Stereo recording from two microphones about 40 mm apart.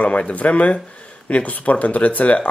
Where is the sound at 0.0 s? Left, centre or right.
Left.